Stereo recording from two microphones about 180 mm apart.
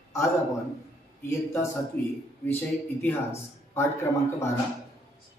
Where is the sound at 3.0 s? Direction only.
15° left (ahead or behind).